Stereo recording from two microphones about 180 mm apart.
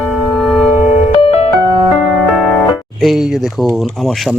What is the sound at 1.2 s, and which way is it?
Music, 35° left (ahead or behind).